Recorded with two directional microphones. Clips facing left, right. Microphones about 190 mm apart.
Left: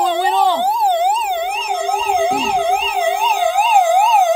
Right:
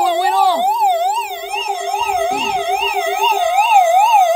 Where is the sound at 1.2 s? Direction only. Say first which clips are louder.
Left 6 dB; 55° left (ahead or behind).